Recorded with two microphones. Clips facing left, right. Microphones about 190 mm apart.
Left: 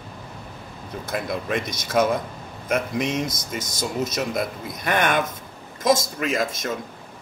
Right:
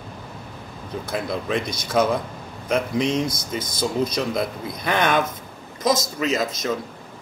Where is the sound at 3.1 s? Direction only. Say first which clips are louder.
Right 3 dB; 50° left (ahead or behind).